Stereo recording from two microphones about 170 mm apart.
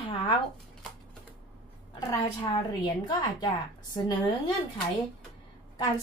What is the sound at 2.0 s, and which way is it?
A woman's voice, 20° left (ahead or behind).